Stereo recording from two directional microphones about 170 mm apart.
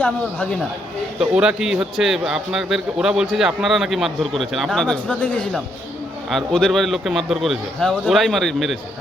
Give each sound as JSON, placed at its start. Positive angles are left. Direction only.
{"t": 1.2, "sound": "a man's voice", "side_deg": -5}